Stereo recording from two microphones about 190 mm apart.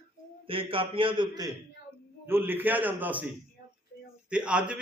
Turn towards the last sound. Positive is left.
turn(degrees=-5)  # may be behind; listen again after turning